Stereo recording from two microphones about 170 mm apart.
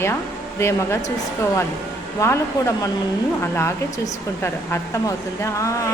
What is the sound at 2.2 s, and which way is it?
Speech, 20° left (ahead or behind).